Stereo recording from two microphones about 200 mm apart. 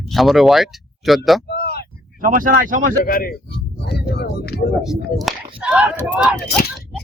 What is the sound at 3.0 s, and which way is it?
Speech, 45° left (ahead or behind).